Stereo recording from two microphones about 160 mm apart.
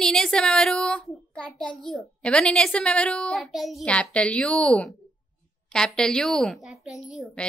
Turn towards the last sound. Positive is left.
turn(degrees=0)  # may be behind; listen again after turning